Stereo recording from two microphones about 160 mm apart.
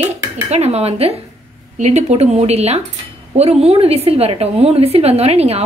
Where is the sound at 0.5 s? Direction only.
40° right (ahead or behind).